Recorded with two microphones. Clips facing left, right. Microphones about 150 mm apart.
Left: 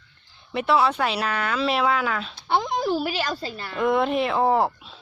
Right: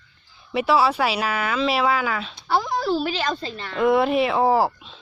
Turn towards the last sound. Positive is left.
turn(degrees=0)  # may be behind; listen again after turning